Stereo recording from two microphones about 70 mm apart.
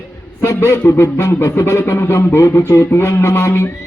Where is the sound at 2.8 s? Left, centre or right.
Left.